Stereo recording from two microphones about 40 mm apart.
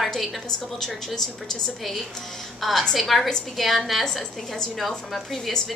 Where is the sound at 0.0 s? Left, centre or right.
Centre.